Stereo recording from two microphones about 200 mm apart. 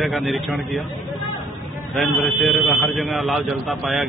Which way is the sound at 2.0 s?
Centre (ahead or behind).